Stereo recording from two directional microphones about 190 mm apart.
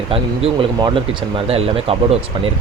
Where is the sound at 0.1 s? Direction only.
30° right (ahead or behind).